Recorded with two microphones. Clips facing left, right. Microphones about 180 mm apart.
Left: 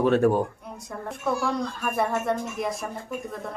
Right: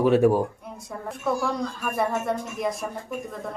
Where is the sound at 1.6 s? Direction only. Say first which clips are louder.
Even; centre (ahead or behind).